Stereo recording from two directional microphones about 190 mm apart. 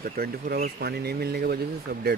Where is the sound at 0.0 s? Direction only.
50° right (ahead or behind).